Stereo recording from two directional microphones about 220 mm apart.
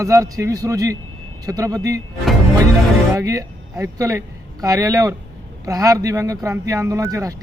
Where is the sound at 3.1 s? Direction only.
15° right (ahead or behind).